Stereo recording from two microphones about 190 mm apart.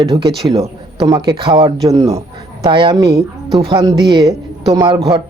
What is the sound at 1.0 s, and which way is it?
A man's voice, 20° right (ahead or behind).